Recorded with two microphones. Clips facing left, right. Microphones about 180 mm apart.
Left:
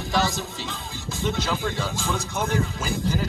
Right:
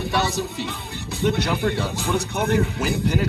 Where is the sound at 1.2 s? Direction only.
65° right (ahead or behind).